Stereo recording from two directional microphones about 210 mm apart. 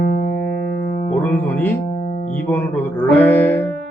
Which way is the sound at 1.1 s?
10° left (ahead or behind).